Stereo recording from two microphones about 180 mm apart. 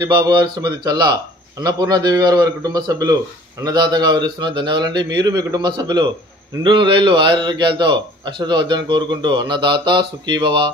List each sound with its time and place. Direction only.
0.0 s a man's voice: 25° right (ahead or behind)